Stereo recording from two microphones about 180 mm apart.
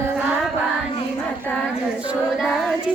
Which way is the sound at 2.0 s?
5° right (ahead or behind).